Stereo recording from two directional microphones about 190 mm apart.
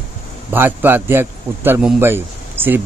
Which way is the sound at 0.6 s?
10° right (ahead or behind).